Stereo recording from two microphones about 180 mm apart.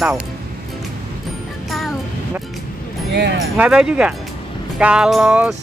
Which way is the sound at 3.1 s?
70° right (ahead or behind).